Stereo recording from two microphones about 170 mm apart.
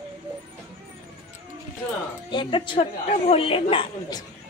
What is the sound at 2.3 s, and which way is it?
A woman's voice, 30° left (ahead or behind).